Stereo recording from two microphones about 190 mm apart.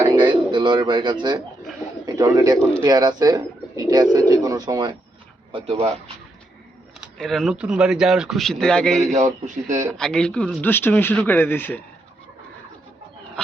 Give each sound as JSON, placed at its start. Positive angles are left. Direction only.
{"t": 0.0, "sound": "bird", "side_deg": -25}
{"t": 0.5, "sound": "a man's voice", "side_deg": -25}
{"t": 7.0, "sound": "speech", "side_deg": 0}
{"t": 9.1, "sound": "speech", "side_deg": -40}
{"t": 10.0, "sound": "speech", "side_deg": 5}